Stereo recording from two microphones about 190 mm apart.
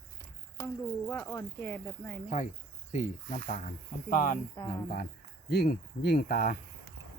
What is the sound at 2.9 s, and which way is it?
Speech, 40° left (ahead or behind).